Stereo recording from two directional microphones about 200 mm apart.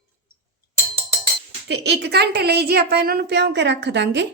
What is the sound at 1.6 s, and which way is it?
Speech, 55° right (ahead or behind).